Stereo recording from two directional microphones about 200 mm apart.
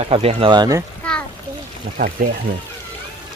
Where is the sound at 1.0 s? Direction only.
5° left (ahead or behind).